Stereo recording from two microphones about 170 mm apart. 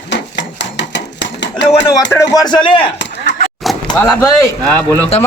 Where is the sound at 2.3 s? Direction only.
25° left (ahead or behind).